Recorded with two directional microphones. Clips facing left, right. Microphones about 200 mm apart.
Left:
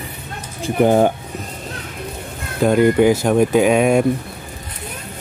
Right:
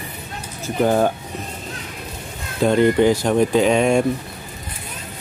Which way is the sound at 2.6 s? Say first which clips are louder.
Left 2 dB; 5° left (ahead or behind).